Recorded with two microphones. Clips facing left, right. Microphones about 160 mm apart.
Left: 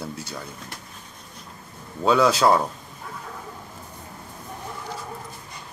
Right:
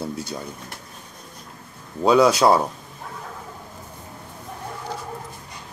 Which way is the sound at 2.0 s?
15° right (ahead or behind).